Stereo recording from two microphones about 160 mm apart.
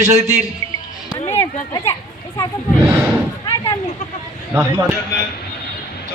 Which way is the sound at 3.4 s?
20° left (ahead or behind).